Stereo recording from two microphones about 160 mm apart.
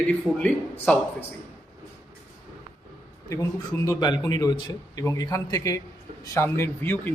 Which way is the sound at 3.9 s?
25° left (ahead or behind).